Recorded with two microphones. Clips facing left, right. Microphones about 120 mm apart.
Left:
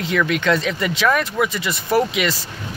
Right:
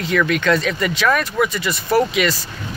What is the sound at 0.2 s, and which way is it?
Speech, 20° left (ahead or behind).